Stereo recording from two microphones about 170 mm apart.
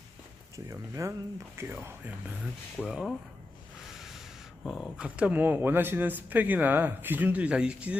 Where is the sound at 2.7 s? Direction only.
Centre (ahead or behind).